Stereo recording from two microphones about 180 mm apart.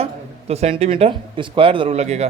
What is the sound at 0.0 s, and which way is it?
A man's voice, 35° right (ahead or behind).